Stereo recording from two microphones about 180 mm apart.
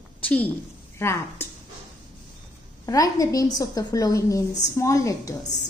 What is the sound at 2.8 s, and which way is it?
A woman's voice, 20° left (ahead or behind).